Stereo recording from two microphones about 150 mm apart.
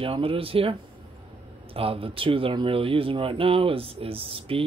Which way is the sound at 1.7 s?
40° right (ahead or behind).